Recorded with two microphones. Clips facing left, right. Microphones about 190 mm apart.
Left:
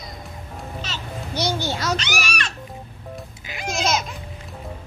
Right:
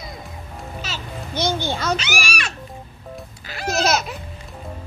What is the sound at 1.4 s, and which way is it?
Music, 50° right (ahead or behind).